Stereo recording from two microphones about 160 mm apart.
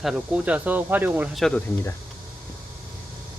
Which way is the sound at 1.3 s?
Centre (ahead or behind).